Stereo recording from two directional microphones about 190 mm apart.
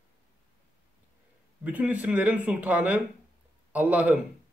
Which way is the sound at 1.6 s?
10° right (ahead or behind).